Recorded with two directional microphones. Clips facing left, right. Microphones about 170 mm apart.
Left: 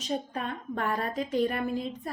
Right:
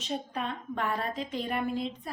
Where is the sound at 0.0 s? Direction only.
45° left (ahead or behind).